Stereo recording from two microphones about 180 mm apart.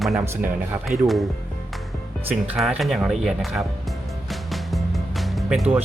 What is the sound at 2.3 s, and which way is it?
Speech, 5° right (ahead or behind).